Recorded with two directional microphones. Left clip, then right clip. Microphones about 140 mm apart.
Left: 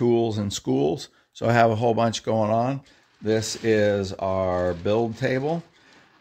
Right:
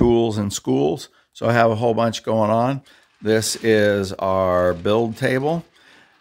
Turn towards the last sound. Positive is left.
turn(degrees=-35)  # may be behind; listen again after turning